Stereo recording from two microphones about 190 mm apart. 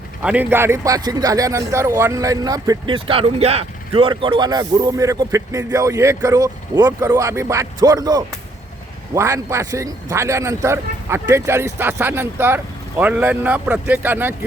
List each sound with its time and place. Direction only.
0.2 s a man's voice: 5° right (ahead or behind)